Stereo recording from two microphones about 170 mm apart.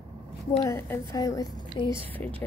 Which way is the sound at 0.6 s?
15° left (ahead or behind).